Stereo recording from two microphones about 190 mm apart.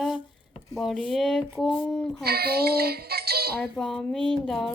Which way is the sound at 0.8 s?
Centre (ahead or behind).